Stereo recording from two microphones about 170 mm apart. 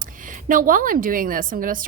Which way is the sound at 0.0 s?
50° right (ahead or behind).